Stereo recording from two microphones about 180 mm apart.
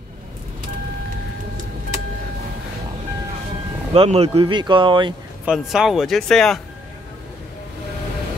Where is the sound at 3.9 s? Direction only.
30° right (ahead or behind).